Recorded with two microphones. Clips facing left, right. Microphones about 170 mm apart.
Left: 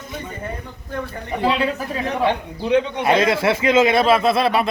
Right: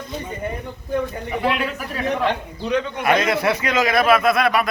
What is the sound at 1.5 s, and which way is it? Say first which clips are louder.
A man's voice: left 3 dB; 25° left (ahead or behind).